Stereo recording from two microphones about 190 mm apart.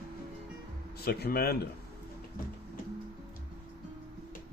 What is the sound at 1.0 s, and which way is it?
Speech, 55° left (ahead or behind).